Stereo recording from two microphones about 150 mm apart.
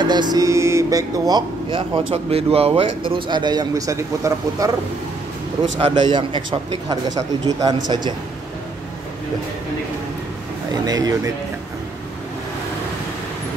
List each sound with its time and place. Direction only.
0.0 s speech: 30° right (ahead or behind)
2.3 s a man's voice: 40° right (ahead or behind); by 4.6 s 20° right (ahead or behind)
5.8 s a man's voice: 35° right (ahead or behind)
10.7 s speech: 25° right (ahead or behind)